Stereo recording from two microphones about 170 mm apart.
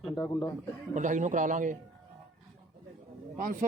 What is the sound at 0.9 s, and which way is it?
Speech, 45° right (ahead or behind).